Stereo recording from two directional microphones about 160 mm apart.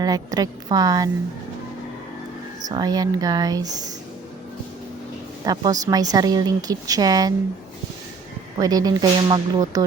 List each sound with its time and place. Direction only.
0.0 s a woman's voice: 25° right (ahead or behind)
2.6 s a woman's voice: 25° right (ahead or behind)
5.5 s a woman's voice: 25° right (ahead or behind)
8.5 s a woman's voice: 25° right (ahead or behind)